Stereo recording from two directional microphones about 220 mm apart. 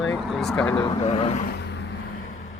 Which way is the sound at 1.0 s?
30° left (ahead or behind).